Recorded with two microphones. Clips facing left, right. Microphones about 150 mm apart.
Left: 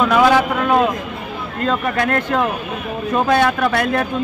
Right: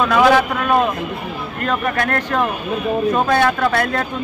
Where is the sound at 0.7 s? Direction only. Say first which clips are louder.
Left 1 dB; 15° left (ahead or behind).